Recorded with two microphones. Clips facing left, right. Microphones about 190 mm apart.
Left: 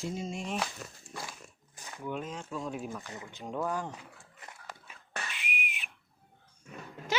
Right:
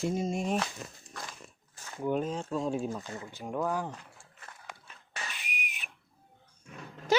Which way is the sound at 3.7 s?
10° right (ahead or behind).